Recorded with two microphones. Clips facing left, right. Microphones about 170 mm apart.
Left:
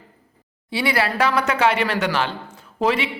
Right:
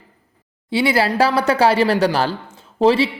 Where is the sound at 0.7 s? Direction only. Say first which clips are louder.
Right 5 dB; 25° right (ahead or behind).